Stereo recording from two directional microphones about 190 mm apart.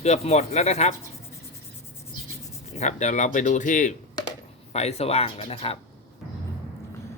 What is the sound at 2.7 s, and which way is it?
Speech, 35° left (ahead or behind).